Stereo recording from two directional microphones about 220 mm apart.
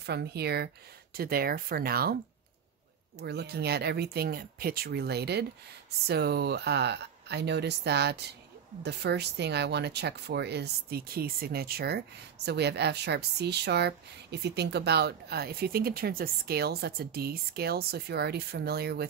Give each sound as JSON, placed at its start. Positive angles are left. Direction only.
{"t": 0.0, "sound": "speech", "side_deg": -50}
{"t": 3.2, "sound": "speech", "side_deg": -50}